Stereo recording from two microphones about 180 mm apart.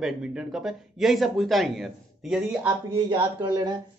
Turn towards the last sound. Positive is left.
turn(degrees=-25)  # may be behind; listen again after turning